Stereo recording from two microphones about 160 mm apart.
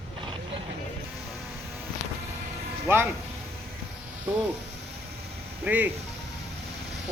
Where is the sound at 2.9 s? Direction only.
15° right (ahead or behind).